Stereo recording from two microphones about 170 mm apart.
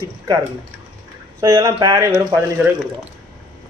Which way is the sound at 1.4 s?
20° right (ahead or behind).